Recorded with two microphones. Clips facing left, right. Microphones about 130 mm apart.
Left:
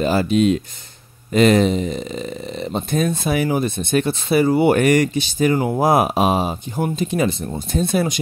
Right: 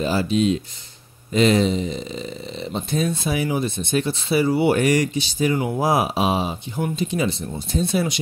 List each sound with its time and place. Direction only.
0.0 s speech: 55° left (ahead or behind)